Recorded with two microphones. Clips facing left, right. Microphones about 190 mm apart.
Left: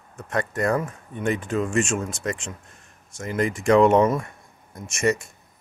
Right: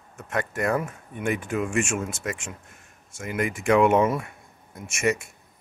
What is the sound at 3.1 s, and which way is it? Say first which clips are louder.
Speech: left 2 dB; 25° right (ahead or behind).